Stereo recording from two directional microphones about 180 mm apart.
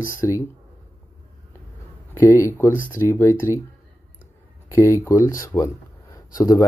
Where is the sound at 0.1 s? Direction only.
15° left (ahead or behind).